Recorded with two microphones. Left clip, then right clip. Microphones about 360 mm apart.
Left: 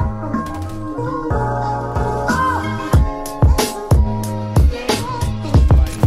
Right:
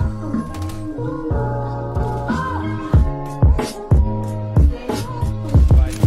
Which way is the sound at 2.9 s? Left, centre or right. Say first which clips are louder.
Left 3 dB; left.